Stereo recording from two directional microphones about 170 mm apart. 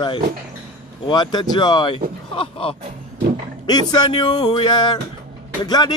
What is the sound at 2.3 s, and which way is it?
Speech, 30° left (ahead or behind).